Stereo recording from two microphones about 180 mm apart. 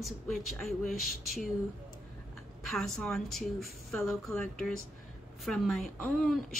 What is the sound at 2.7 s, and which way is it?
A woman's voice, 5° left (ahead or behind).